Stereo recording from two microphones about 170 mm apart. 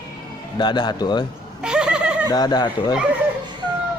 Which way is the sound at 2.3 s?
25° left (ahead or behind).